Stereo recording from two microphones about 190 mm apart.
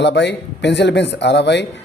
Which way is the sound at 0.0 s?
65° left (ahead or behind).